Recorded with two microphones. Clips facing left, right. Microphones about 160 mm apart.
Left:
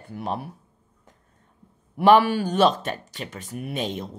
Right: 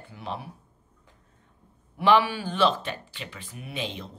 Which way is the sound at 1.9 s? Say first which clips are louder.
Left 5 dB; 50° left (ahead or behind).